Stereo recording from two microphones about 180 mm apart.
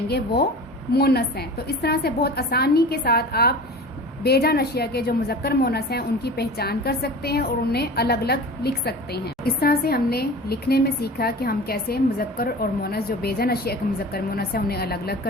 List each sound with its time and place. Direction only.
0.9 s a woman's voice: 60° left (ahead or behind)